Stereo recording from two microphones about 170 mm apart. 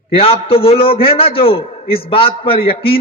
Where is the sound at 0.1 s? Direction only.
35° left (ahead or behind).